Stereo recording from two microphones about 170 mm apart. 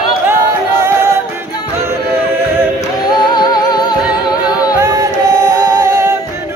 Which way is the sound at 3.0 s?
25° left (ahead or behind).